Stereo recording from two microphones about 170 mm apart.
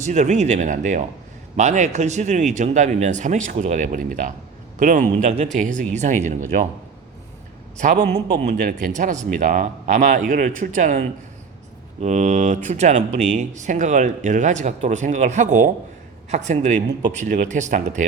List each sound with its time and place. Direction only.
0.0 s speech: 45° right (ahead or behind)
7.9 s a man's voice: 75° right (ahead or behind)
8.4 s speech: 55° right (ahead or behind)
12.0 s speech: 45° right (ahead or behind)